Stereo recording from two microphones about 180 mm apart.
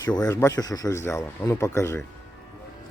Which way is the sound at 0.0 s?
20° left (ahead or behind).